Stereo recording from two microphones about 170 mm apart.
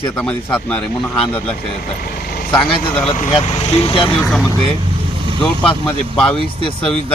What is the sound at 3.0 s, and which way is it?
Speech, 45° left (ahead or behind).